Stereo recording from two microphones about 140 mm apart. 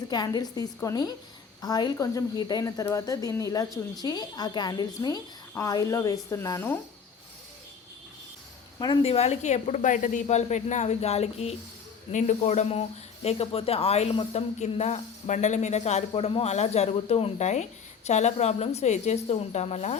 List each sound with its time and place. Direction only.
0.1 s a woman's voice: 30° left (ahead or behind)
9.0 s a woman's voice: 50° left (ahead or behind)